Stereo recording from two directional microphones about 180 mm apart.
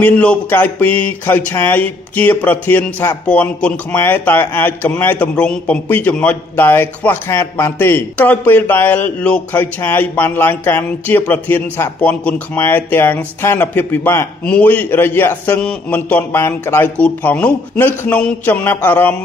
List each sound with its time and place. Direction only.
0.0 s speech: 10° left (ahead or behind)